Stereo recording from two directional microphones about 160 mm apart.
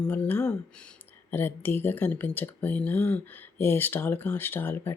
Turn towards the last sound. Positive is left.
turn(degrees=15)  # may be behind; listen again after turning